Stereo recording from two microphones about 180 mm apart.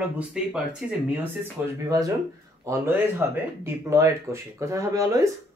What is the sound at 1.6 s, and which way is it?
Speech, 20° right (ahead or behind).